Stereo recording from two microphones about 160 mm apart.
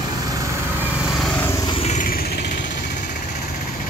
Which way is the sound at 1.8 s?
50° left (ahead or behind).